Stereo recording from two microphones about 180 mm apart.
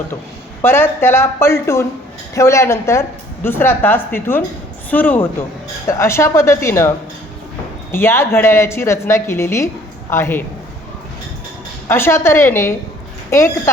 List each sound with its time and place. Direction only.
0.6 s a woman's voice: 15° left (ahead or behind)
7.9 s a woman's voice: 15° left (ahead or behind)
11.9 s a woman's voice: 15° left (ahead or behind)